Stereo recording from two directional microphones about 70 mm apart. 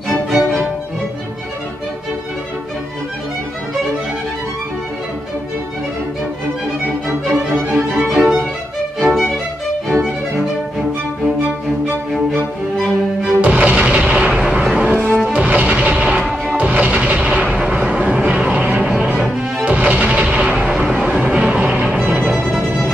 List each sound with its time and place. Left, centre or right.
0.1 s music: centre
7.2 s music: centre
8.1 s violin: centre
9.0 s music: centre
12.1 s music: centre
13.4 s music: right
20.6 s music: centre
22.3 s music: centre